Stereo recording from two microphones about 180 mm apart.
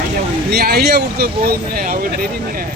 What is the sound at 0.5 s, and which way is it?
Speech, 60° right (ahead or behind).